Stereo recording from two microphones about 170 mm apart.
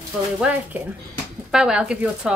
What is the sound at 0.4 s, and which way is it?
Speech, 10° right (ahead or behind).